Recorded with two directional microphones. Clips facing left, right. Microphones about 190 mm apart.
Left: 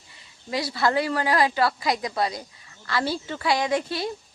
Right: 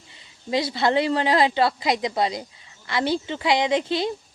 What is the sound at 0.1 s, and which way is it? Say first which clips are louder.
A woman's voice: right 5 dB; 25° right (ahead or behind).